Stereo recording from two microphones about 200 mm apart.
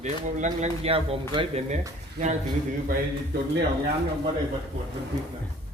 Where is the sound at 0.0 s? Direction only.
35° right (ahead or behind).